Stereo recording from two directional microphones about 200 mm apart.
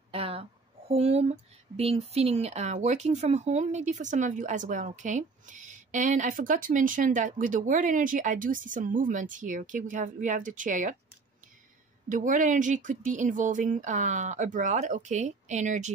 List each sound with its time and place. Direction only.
0.1 s speech: 30° right (ahead or behind)
12.1 s speech: 40° right (ahead or behind)